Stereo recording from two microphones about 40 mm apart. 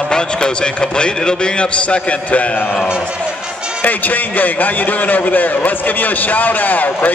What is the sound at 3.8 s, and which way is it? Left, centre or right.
A man's voice, left.